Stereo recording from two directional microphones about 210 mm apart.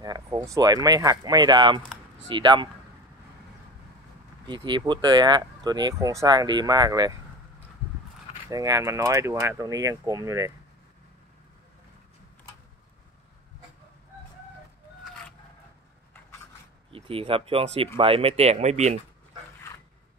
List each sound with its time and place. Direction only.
0.0 s speech: 15° right (ahead or behind)
4.5 s speech: 20° right (ahead or behind)
8.5 s speech: 15° right (ahead or behind)
16.9 s speech: 25° right (ahead or behind)